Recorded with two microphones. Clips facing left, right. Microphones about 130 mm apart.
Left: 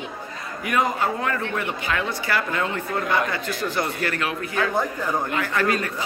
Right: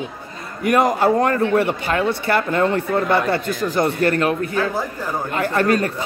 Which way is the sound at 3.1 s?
60° right (ahead or behind).